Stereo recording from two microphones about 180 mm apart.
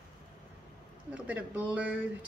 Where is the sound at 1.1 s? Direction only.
5° right (ahead or behind).